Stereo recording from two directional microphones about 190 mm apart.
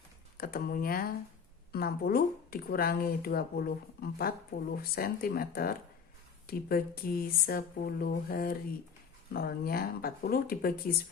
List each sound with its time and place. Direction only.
0.3 s speech: 50° left (ahead or behind)